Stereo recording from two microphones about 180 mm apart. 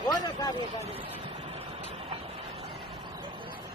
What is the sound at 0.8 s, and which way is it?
Vehicle, 30° right (ahead or behind).